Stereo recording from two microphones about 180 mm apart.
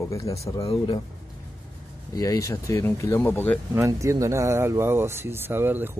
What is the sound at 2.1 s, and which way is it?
Speech, 20° left (ahead or behind).